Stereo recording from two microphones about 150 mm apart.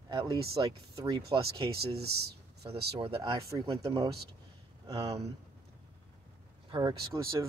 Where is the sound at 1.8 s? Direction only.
90° right.